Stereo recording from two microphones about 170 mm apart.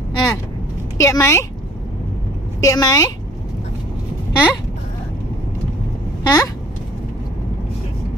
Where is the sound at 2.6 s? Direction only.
20° left (ahead or behind).